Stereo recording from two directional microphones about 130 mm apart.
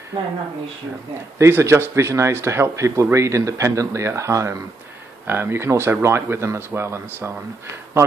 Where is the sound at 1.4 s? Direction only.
20° right (ahead or behind).